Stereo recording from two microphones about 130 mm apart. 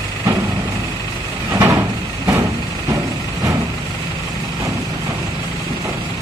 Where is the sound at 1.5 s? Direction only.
15° right (ahead or behind).